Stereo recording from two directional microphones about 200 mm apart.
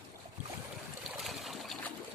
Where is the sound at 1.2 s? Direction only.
Centre (ahead or behind).